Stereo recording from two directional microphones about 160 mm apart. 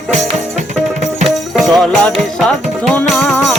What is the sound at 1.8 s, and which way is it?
Music, centre (ahead or behind).